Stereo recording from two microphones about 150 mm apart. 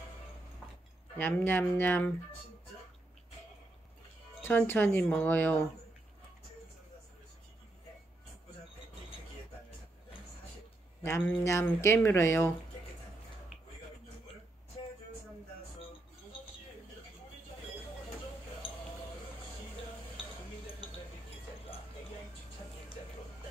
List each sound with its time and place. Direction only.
1.1 s speech: 15° left (ahead or behind)
4.4 s speech: 15° left (ahead or behind)
11.0 s speech: 15° left (ahead or behind)